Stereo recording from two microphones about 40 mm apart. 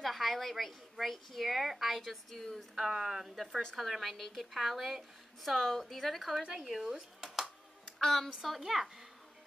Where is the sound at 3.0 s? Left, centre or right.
Centre.